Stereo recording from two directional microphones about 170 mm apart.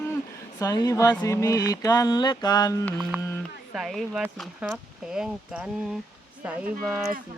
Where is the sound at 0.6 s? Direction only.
20° left (ahead or behind).